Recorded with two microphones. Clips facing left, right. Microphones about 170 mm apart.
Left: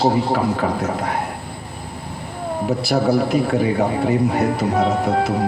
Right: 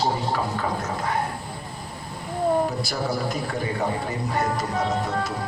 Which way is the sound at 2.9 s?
65° left (ahead or behind).